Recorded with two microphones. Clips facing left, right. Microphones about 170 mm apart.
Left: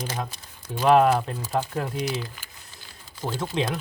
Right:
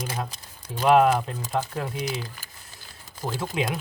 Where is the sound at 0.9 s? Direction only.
Centre (ahead or behind).